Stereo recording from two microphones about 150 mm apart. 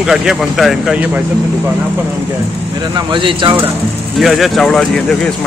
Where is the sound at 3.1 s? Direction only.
35° right (ahead or behind).